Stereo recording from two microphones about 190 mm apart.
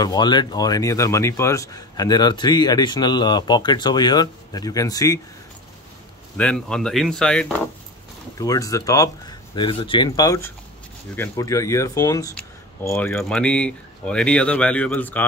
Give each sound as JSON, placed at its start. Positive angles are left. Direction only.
{"t": 0.0, "sound": "speech", "side_deg": 20}
{"t": 6.3, "sound": "speech", "side_deg": 5}
{"t": 8.4, "sound": "speech", "side_deg": 20}